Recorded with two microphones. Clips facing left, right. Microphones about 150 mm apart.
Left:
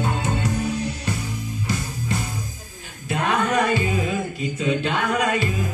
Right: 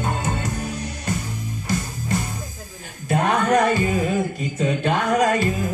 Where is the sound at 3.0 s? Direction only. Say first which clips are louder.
Right 3 dB; 45° right (ahead or behind).